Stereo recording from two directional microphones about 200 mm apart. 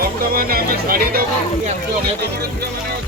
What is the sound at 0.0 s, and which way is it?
Music, 45° right (ahead or behind).